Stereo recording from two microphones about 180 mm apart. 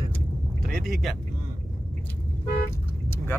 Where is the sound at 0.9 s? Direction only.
Centre (ahead or behind).